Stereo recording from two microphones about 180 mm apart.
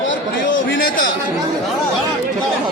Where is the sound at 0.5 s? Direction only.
90° left.